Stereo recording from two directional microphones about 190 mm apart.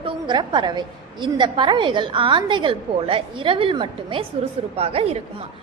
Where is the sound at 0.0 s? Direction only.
25° right (ahead or behind).